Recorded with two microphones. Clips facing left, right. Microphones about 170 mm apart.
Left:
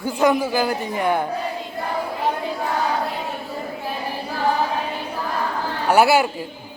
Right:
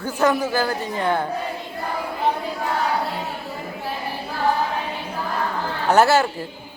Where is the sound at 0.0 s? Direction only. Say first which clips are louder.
Left 2 dB; 15° left (ahead or behind).